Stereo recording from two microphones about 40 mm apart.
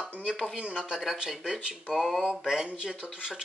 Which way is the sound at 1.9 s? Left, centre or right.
Centre.